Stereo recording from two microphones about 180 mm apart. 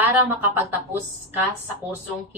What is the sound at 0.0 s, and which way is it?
Speech, 10° right (ahead or behind).